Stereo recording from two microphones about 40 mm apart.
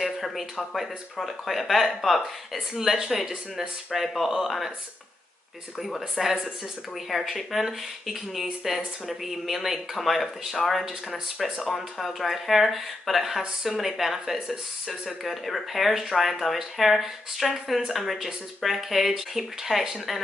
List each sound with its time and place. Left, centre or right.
0.0 s a sound: centre
1.1 s speech: centre
5.8 s speech: centre
11.1 s speech: centre
11.5 s speech: centre